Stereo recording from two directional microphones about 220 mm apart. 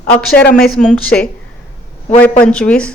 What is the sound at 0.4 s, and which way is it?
Speech, 45° left (ahead or behind).